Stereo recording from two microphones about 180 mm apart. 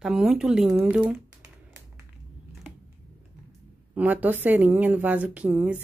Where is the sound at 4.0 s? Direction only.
10° right (ahead or behind).